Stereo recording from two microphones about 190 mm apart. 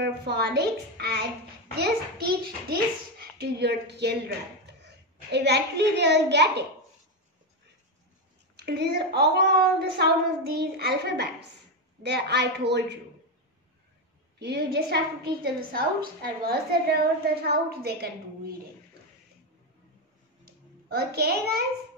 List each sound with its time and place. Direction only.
0.0 s a woman's voice: 60° right (ahead or behind)
8.5 s a woman's voice: 60° right (ahead or behind)
14.4 s a woman's voice: 60° right (ahead or behind)
20.4 s a sound: 55° right (ahead or behind)